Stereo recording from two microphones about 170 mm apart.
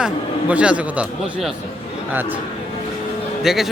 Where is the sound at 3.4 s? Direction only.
Centre (ahead or behind).